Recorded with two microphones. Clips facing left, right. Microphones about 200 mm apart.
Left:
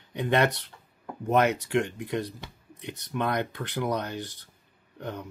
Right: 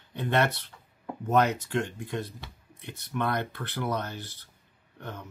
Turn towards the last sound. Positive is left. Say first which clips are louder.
# left 5 dB
turn(degrees=15)  # may be behind; listen again after turning